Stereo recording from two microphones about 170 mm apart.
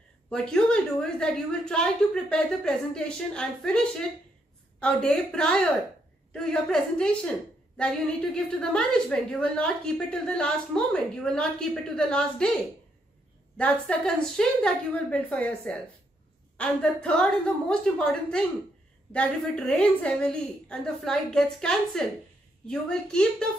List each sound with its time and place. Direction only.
0.3 s a woman's voice: 5° left (ahead or behind)
13.6 s a woman's voice: 5° left (ahead or behind)